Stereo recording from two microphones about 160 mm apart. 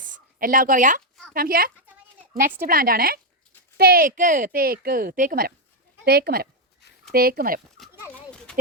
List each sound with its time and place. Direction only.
0.0 s speech: 60° right (ahead or behind)
1.3 s speech: 65° right (ahead or behind)
6.1 s speech: 80° right
8.0 s a sound: 5° left (ahead or behind)